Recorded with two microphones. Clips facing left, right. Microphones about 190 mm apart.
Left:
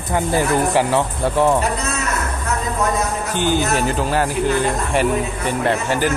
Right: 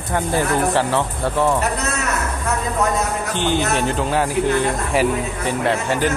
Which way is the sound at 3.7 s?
5° left (ahead or behind).